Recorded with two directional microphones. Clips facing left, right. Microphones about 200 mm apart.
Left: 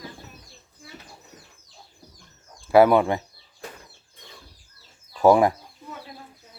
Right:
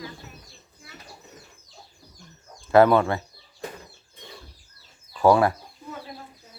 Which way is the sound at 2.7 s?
10° left (ahead or behind).